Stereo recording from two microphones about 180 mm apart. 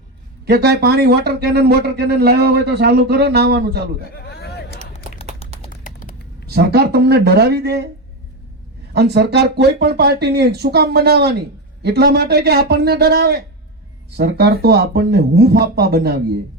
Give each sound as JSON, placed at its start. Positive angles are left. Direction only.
{"t": 0.4, "sound": "a man's voice", "side_deg": -65}
{"t": 4.1, "sound": "a sound", "side_deg": 60}
{"t": 5.4, "sound": "typing", "side_deg": 30}
{"t": 6.5, "sound": "a man's voice", "side_deg": -65}
{"t": 8.9, "sound": "a man's voice", "side_deg": -65}